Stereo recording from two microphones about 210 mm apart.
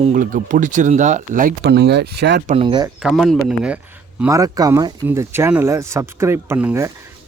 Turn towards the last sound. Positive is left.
turn(degrees=-10)  # may be behind; listen again after turning